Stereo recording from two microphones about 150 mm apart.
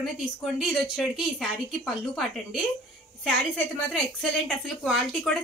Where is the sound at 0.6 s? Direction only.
Centre (ahead or behind).